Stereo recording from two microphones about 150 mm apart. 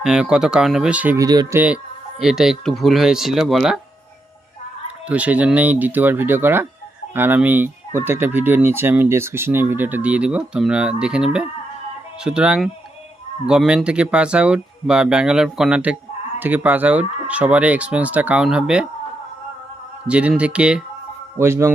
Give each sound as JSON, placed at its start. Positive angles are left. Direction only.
{"t": 0.0, "sound": "speech", "side_deg": -5}
{"t": 1.2, "sound": "speech", "side_deg": -25}
{"t": 1.5, "sound": "speech", "side_deg": -10}
{"t": 5.0, "sound": "speech", "side_deg": -10}
{"t": 20.1, "sound": "speech", "side_deg": -10}
{"t": 21.3, "sound": "speech", "side_deg": -15}